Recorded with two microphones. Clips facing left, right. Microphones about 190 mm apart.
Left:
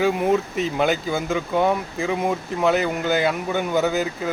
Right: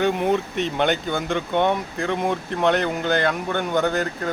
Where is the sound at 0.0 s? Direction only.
Centre (ahead or behind).